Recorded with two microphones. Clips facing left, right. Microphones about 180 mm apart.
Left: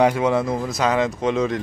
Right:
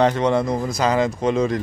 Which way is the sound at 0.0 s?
5° left (ahead or behind).